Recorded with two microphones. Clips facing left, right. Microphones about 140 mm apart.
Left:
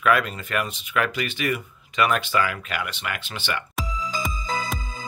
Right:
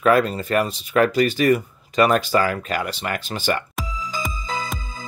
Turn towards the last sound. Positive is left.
turn(degrees=0)  # may be behind; listen again after turning